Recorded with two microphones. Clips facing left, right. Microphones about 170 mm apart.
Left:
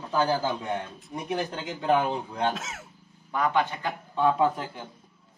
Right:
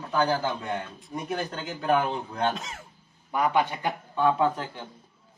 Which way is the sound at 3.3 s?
15° right (ahead or behind).